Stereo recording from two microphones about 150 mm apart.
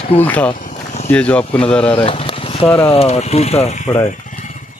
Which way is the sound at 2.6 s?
10° left (ahead or behind).